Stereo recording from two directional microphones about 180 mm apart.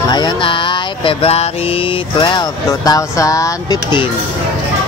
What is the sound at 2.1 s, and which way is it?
Speech, 25° left (ahead or behind).